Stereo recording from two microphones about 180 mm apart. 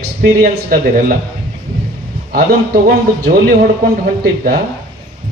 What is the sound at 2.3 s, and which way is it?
A man's voice, 55° right (ahead or behind).